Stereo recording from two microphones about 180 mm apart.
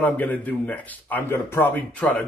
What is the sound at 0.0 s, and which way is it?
A man's voice, 10° left (ahead or behind).